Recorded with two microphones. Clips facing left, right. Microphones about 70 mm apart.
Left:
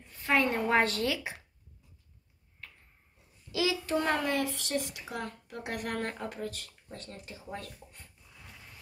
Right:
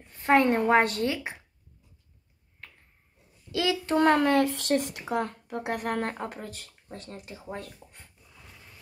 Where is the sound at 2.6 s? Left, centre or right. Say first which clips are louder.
Right 1 dB; right.